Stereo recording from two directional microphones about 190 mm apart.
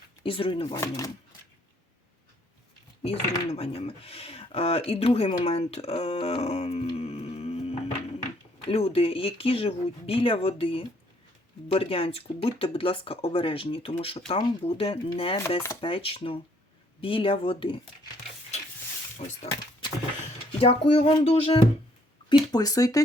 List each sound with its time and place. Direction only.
0.2 s speech: 30° left (ahead or behind)
3.0 s speech: 30° left (ahead or behind)
20.5 s speech: 30° left (ahead or behind)